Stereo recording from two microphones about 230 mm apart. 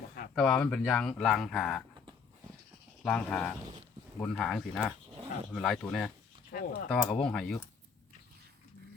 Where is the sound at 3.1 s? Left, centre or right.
Centre.